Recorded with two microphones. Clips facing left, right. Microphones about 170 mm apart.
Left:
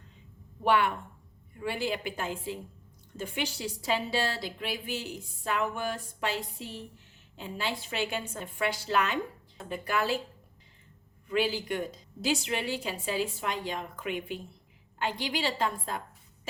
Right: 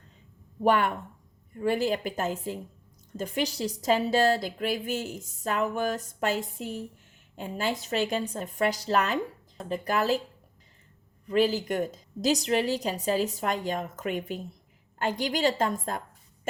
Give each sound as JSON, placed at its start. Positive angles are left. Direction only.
{"t": 0.6, "sound": "a woman's voice", "side_deg": -45}
{"t": 11.3, "sound": "a woman's voice", "side_deg": -40}